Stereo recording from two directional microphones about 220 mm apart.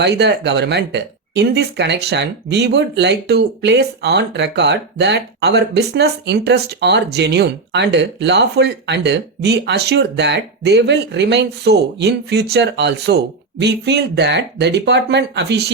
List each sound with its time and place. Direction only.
0.0 s speech: 50° right (ahead or behind)